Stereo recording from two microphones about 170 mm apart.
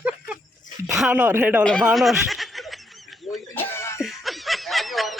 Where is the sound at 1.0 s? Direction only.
10° right (ahead or behind).